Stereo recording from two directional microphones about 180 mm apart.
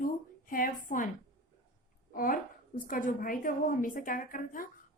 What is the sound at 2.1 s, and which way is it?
A woman's voice, 50° left (ahead or behind).